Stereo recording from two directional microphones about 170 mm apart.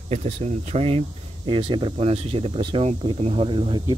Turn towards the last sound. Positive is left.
turn(degrees=-30)  # may be behind; listen again after turning